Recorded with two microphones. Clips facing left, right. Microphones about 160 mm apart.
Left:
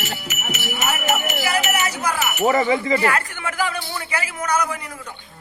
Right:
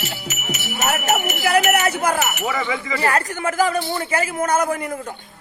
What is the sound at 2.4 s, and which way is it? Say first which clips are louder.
Speech: left 6 dB; 40° left (ahead or behind).